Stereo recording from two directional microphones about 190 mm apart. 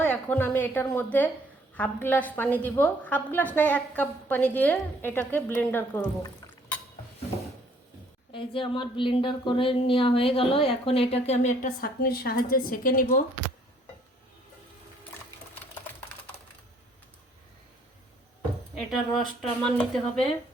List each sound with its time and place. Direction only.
0.0 s a woman's voice: 10° left (ahead or behind)
8.3 s speech: 25° left (ahead or behind); by 13.1 s 50° left (ahead or behind)
18.7 s speech: centre (ahead or behind)